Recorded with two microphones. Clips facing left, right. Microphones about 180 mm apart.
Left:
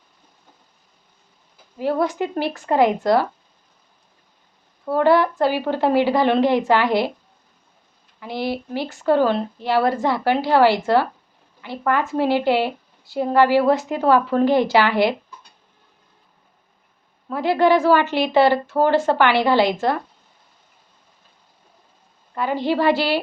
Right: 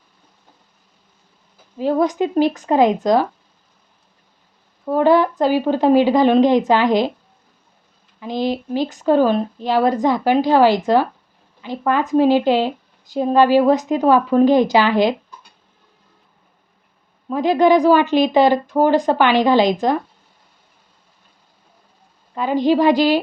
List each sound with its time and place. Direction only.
1.8 s a woman's voice: 15° right (ahead or behind)
4.9 s a woman's voice: 15° right (ahead or behind)
8.2 s a woman's voice: 15° right (ahead or behind)
17.2 s a woman's voice: 15° right (ahead or behind)
22.4 s a woman's voice: 15° right (ahead or behind)